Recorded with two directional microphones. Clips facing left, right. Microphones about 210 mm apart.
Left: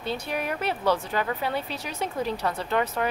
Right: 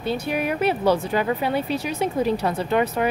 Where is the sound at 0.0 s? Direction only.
5° right (ahead or behind).